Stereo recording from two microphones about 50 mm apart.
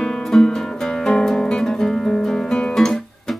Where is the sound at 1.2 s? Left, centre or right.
Centre.